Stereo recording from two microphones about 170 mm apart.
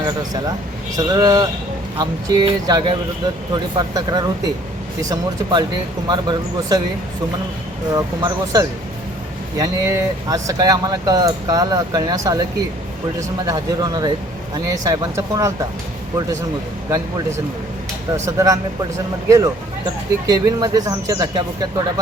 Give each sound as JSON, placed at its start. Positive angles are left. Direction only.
{"t": 0.0, "sound": "speech", "side_deg": -25}
{"t": 7.9, "sound": "speech", "side_deg": -20}
{"t": 18.3, "sound": "speech", "side_deg": -20}